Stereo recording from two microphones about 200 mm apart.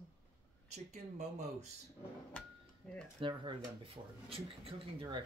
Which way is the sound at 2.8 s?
5° left (ahead or behind).